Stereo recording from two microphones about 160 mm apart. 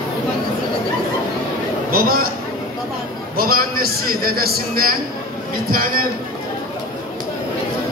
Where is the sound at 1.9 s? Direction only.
60° right (ahead or behind).